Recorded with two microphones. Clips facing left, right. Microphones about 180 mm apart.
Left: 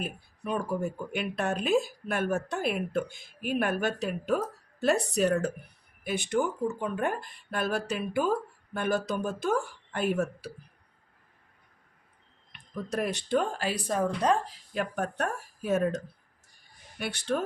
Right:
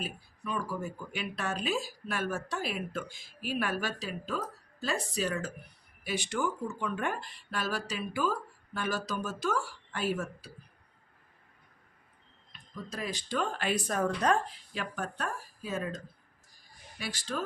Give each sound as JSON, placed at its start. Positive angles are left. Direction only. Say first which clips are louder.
{"t": 0.0, "sound": "speech", "louder": "left 3 dB", "side_deg": 55}
{"t": 12.5, "sound": "speech", "louder": "left 8 dB", "side_deg": 65}
{"t": 13.4, "sound": "speech", "louder": "left 1 dB", "side_deg": 35}
{"t": 14.7, "sound": "speech", "louder": "left 8 dB", "side_deg": 55}
{"t": 17.0, "sound": "speech", "louder": "left 6 dB", "side_deg": 60}